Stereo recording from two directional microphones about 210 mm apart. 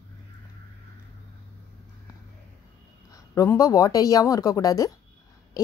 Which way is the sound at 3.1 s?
15° left (ahead or behind).